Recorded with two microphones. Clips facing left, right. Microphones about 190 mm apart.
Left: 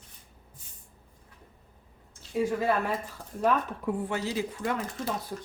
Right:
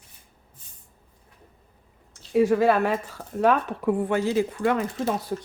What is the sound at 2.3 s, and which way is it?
Speech, 75° right (ahead or behind).